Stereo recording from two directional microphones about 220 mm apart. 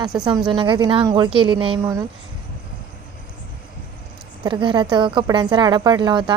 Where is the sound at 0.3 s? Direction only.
20° right (ahead or behind).